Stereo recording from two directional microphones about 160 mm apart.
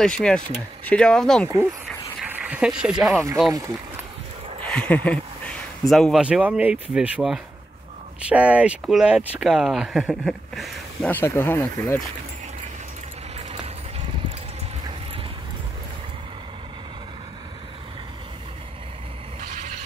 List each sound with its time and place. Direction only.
0.0 s speech: 5° left (ahead or behind)
1.5 s speech: 20° right (ahead or behind)
2.2 s a sound: 10° right (ahead or behind)
3.0 s speech: 15° right (ahead or behind)
4.6 s speech: 5° left (ahead or behind)
11.1 s speech: 15° left (ahead or behind)
19.4 s a sound: 50° right (ahead or behind)